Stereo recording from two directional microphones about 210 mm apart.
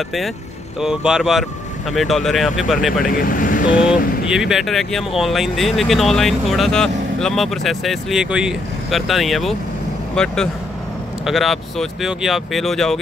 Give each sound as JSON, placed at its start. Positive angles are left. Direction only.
{"t": 0.7, "sound": "speech", "side_deg": -5}
{"t": 3.1, "sound": "speech", "side_deg": 40}
{"t": 4.3, "sound": "speech", "side_deg": 0}